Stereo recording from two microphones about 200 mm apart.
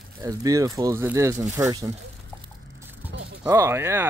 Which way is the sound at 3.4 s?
15° right (ahead or behind).